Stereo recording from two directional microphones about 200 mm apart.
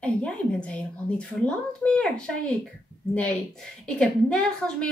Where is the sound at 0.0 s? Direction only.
5° left (ahead or behind).